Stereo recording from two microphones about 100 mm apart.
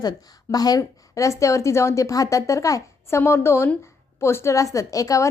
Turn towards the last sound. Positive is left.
turn(degrees=35)  # may be behind; listen again after turning